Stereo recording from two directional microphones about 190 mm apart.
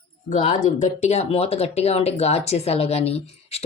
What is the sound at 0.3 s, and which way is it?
Speech, 40° left (ahead or behind).